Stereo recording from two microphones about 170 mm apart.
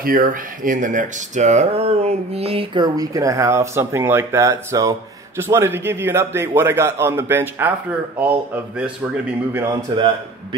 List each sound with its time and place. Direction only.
0.0 s a man's voice: 55° right (ahead or behind); by 8.9 s 10° right (ahead or behind)
9.9 s a man's voice: 25° right (ahead or behind)